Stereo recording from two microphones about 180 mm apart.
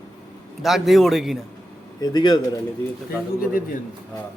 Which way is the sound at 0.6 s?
Centre (ahead or behind).